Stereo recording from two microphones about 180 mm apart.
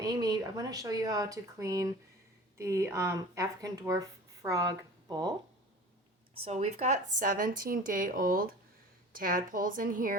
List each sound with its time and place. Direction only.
0.0 s speech: 20° right (ahead or behind)
6.4 s speech: 40° right (ahead or behind)